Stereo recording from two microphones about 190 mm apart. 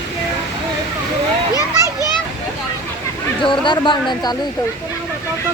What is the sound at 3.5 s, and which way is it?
Speech, 25° left (ahead or behind).